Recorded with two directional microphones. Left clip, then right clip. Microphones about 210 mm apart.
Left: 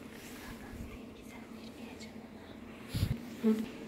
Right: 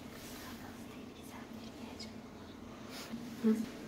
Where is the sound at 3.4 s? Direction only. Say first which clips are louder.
Left 2 dB; centre (ahead or behind).